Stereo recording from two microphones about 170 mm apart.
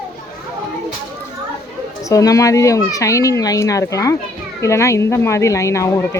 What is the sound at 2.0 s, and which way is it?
Speech, 20° left (ahead or behind).